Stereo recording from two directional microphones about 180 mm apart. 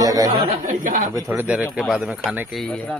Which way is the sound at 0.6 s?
45° right (ahead or behind).